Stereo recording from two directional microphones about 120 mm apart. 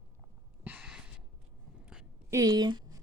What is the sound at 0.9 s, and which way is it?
Gasp, 5° right (ahead or behind).